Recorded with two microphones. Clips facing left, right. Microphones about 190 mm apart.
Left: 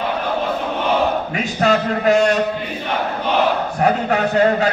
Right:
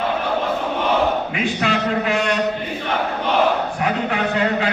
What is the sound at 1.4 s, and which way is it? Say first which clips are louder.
Speech: left 5 dB; 40° left (ahead or behind).